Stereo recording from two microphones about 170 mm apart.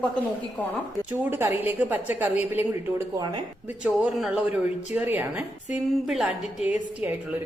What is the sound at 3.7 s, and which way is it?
A man's voice, 5° right (ahead or behind).